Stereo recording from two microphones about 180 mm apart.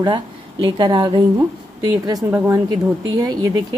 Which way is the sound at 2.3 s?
15° right (ahead or behind).